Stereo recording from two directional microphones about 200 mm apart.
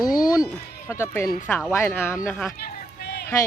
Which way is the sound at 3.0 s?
55° left (ahead or behind).